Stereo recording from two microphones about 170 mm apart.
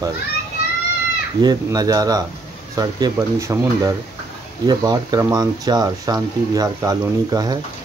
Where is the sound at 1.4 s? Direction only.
25° right (ahead or behind).